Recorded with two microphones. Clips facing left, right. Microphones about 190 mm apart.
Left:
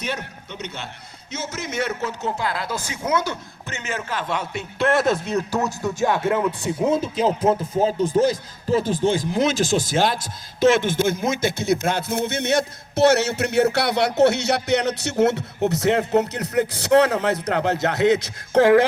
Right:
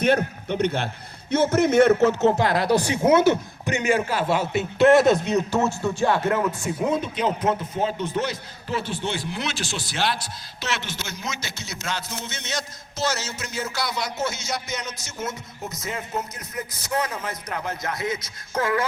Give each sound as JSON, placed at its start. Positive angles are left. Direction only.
{"t": 0.4, "sound": "a man's voice", "side_deg": -55}
{"t": 2.9, "sound": "a man's voice", "side_deg": -25}
{"t": 6.6, "sound": "speech", "side_deg": 25}